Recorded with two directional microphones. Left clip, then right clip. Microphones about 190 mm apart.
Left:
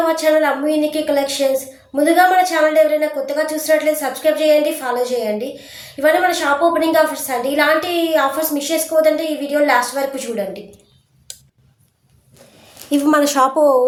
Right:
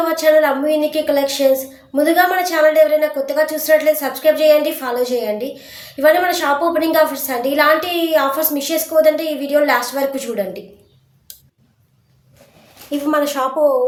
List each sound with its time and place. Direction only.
0.0 s a woman's voice: 10° right (ahead or behind)
12.9 s a woman's voice: 35° left (ahead or behind)